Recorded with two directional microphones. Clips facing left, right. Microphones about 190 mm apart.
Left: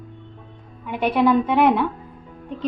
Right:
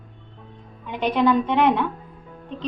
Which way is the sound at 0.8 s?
10° left (ahead or behind).